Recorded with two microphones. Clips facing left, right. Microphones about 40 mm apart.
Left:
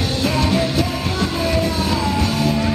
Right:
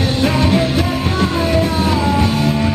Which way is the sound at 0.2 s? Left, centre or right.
Right.